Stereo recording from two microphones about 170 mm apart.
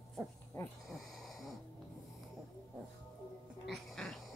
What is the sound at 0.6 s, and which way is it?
Speech, 15° left (ahead or behind).